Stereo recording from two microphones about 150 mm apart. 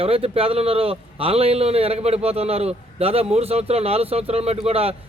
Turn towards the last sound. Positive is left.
turn(degrees=-40)  # may be behind; listen again after turning